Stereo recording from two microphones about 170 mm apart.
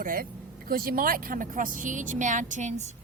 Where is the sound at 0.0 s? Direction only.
55° right (ahead or behind).